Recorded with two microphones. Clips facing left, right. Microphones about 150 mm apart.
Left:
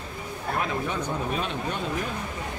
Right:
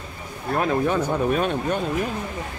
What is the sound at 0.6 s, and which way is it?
Speech, 50° right (ahead or behind).